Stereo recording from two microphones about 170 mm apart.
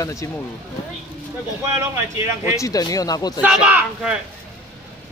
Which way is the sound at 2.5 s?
20° left (ahead or behind).